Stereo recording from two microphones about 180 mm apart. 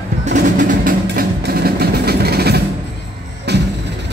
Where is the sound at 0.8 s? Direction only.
50° right (ahead or behind).